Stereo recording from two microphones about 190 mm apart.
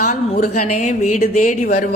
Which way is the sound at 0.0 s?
40° left (ahead or behind).